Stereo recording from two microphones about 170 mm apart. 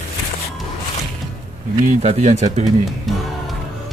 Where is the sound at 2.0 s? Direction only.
40° right (ahead or behind).